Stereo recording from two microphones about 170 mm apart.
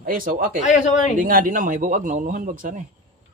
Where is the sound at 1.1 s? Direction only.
50° right (ahead or behind).